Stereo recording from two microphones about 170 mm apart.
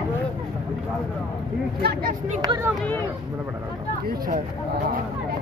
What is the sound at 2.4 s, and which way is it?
Speech, 20° right (ahead or behind).